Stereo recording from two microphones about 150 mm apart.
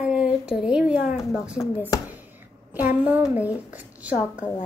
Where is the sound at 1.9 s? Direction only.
25° left (ahead or behind).